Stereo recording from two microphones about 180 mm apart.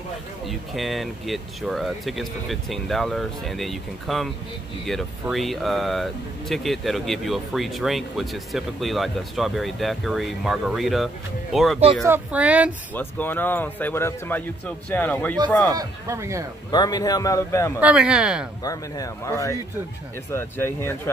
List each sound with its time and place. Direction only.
0.5 s speech: centre (ahead or behind)
12.0 s speech: 10° right (ahead or behind)
12.9 s speech: 10° left (ahead or behind)
15.7 s speech: 20° right (ahead or behind)
16.7 s a man's voice: 20° left (ahead or behind)
17.7 s speech: 5° right (ahead or behind)
18.6 s a man's voice: 20° left (ahead or behind)